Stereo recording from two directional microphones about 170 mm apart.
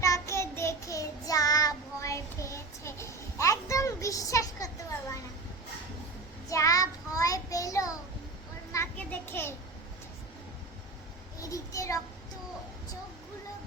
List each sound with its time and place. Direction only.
0.0 s child singing: 20° left (ahead or behind)
6.5 s child singing: 20° left (ahead or behind)
8.7 s a sound: 10° left (ahead or behind)
11.3 s child singing: 20° left (ahead or behind)